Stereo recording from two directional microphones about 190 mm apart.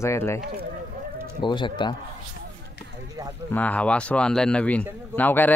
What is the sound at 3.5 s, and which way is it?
Speech, 5° left (ahead or behind).